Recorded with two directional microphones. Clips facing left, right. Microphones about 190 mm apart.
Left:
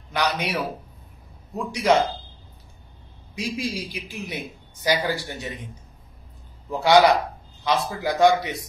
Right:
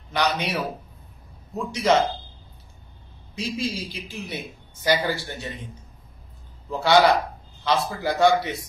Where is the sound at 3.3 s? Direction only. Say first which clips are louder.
Even; 15° left (ahead or behind).